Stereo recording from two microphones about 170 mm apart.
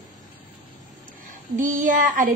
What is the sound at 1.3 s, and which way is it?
Child singing, 50° right (ahead or behind).